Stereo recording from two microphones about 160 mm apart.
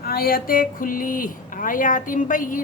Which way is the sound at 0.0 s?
70° left (ahead or behind).